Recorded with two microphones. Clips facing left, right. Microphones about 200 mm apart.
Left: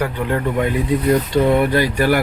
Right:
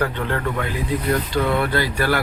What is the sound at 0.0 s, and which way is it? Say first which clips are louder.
Speech: left 3 dB; 10° left (ahead or behind).